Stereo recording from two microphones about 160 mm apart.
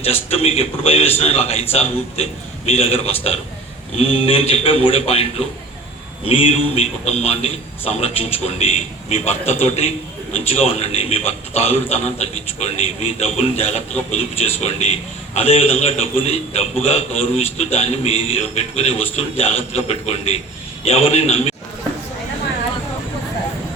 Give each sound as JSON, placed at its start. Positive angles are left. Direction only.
{"t": 0.0, "sound": "a man's voice", "side_deg": 40}